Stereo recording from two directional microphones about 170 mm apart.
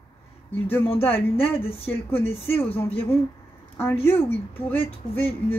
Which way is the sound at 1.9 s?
10° left (ahead or behind).